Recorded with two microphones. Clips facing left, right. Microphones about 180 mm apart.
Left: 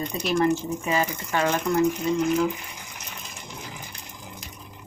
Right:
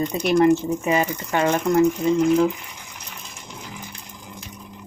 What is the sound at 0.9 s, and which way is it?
Speech, 15° right (ahead or behind).